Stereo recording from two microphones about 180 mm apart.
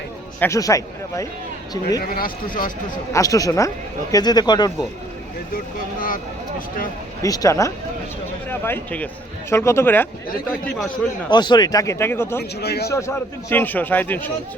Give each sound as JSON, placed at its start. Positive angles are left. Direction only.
{"t": 0.3, "sound": "speech", "side_deg": 15}
{"t": 2.0, "sound": "speech", "side_deg": 55}
{"t": 3.1, "sound": "speech", "side_deg": 20}
{"t": 7.2, "sound": "speech", "side_deg": 20}
{"t": 11.3, "sound": "speech", "side_deg": 25}
{"t": 12.4, "sound": "speech", "side_deg": 65}
{"t": 13.5, "sound": "speech", "side_deg": 10}